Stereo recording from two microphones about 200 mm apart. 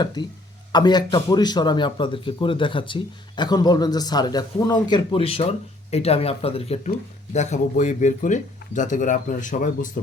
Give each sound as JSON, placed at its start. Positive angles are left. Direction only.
{"t": 0.0, "sound": "a man's voice", "side_deg": 20}